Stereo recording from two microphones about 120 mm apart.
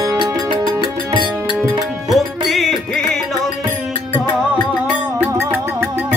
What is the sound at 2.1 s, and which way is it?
Music, centre (ahead or behind).